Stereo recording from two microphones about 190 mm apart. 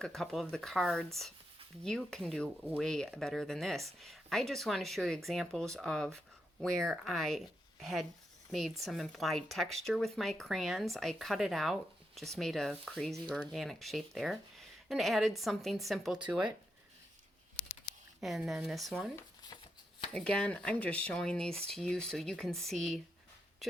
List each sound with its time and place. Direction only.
0.0 s speech: centre (ahead or behind)
18.2 s speech: centre (ahead or behind)
19.1 s a sound: 20° left (ahead or behind)
20.1 s speech: 5° left (ahead or behind)